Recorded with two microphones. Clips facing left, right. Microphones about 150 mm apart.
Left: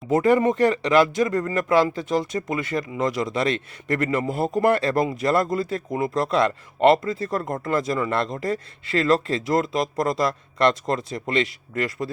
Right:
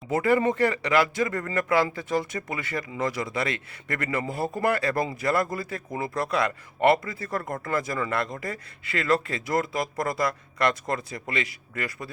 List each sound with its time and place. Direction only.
0.1 s speech: 20° left (ahead or behind)